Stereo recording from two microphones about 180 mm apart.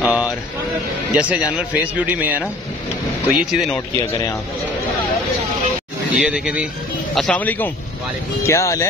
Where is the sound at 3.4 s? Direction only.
Centre (ahead or behind).